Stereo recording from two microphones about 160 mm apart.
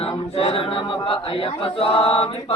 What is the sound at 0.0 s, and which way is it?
Speech, 35° left (ahead or behind).